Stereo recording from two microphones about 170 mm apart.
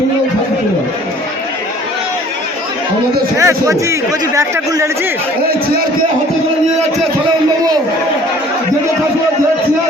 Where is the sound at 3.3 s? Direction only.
20° right (ahead or behind).